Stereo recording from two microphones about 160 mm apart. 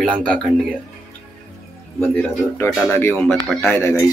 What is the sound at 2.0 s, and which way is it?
A man's voice, 10° left (ahead or behind).